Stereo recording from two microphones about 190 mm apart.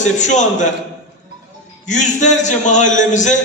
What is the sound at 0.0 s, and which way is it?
Speech, 40° left (ahead or behind).